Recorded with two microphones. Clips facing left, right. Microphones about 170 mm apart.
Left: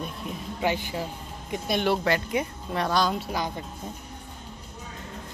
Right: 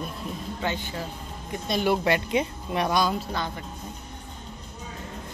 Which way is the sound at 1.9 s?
20° right (ahead or behind).